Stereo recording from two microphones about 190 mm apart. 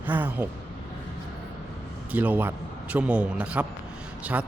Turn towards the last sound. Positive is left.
turn(degrees=-10)  # may be behind; listen again after turning